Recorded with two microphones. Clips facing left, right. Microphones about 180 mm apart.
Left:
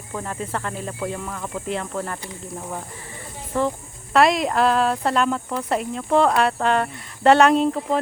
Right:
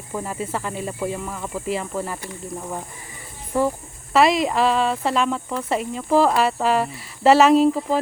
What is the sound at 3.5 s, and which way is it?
Speech, 10° right (ahead or behind).